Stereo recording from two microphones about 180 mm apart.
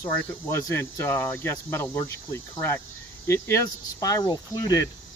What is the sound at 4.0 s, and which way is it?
Speech, 20° left (ahead or behind).